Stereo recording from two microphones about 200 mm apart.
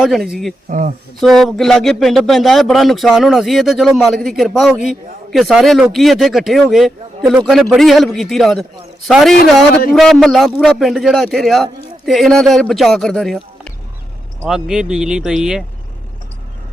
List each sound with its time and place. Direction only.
0.0 s speech: centre (ahead or behind)
0.7 s speech: 40° right (ahead or behind)
1.2 s speech: centre (ahead or behind)